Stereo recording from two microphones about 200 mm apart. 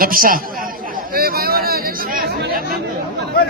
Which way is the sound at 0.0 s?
45° right (ahead or behind).